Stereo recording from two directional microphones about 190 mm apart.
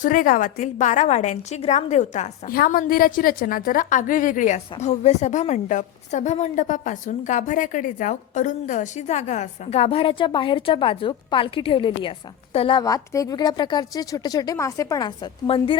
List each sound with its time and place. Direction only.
0.0 s a woman's voice: 45° left (ahead or behind); by 15.8 s 25° left (ahead or behind)